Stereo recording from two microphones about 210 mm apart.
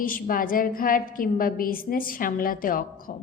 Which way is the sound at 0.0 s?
40° left (ahead or behind).